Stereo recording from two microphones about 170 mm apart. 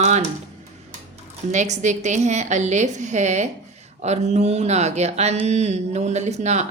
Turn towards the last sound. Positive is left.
turn(degrees=-40)  # may be behind; listen again after turning